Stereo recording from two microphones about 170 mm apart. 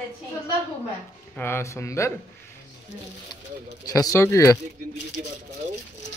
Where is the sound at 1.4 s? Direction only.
15° left (ahead or behind).